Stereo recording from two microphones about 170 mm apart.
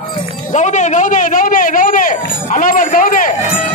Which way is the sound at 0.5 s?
45° left (ahead or behind).